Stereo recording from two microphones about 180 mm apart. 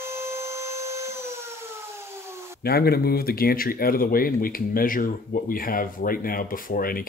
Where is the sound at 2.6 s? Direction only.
60° left (ahead or behind).